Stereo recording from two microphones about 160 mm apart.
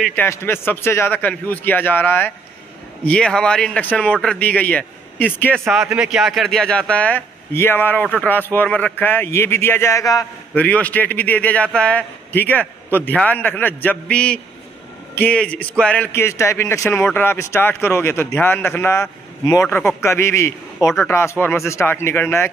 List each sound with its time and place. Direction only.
0.1 s speech: 15° left (ahead or behind)
5.7 s speech: 5° right (ahead or behind); by 10.2 s 20° left (ahead or behind)
10.5 s speech: 10° left (ahead or behind)